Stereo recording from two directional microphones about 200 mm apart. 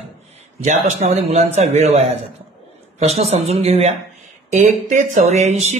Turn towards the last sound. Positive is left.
turn(degrees=-35)  # may be behind; listen again after turning